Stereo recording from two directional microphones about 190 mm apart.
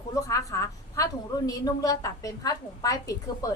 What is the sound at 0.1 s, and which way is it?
A woman's voice, 15° left (ahead or behind).